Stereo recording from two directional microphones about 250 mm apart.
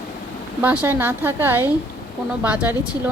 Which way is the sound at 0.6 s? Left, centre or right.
Centre.